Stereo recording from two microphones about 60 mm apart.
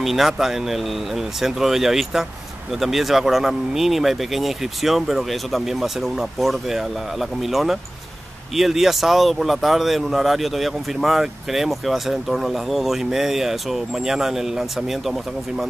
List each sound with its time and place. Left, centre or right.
0.0 s speech: centre